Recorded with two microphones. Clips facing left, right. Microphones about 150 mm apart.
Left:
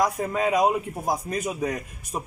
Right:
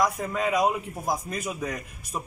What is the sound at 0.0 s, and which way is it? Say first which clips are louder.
Speech: left 2 dB; 35° left (ahead or behind).